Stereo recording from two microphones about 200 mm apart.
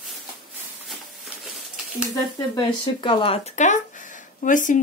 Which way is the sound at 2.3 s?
20° left (ahead or behind).